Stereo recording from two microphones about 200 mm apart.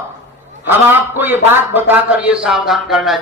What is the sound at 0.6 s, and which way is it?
A man's voice, 10° right (ahead or behind).